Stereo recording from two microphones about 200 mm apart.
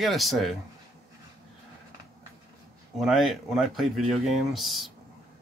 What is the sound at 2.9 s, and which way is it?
Speech, centre (ahead or behind).